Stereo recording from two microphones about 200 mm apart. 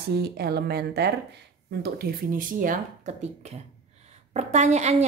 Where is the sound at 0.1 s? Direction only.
55° right (ahead or behind).